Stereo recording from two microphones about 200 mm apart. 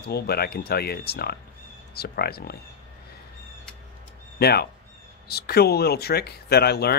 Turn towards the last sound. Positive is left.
turn(degrees=55)  # may be behind; listen again after turning